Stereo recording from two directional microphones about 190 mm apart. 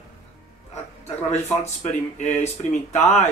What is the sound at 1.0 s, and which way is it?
Speech, 35° left (ahead or behind).